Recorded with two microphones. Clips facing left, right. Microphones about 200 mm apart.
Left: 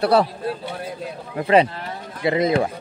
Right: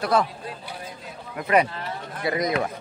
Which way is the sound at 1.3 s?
25° left (ahead or behind).